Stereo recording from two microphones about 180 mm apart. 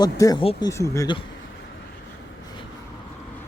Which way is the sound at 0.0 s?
20° left (ahead or behind).